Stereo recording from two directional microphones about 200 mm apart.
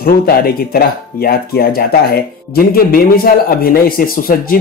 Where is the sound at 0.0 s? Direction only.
50° left (ahead or behind).